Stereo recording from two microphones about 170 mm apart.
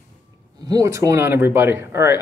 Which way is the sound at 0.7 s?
20° right (ahead or behind).